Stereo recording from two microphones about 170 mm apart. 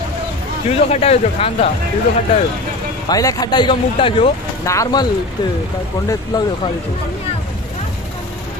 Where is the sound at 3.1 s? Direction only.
20° left (ahead or behind).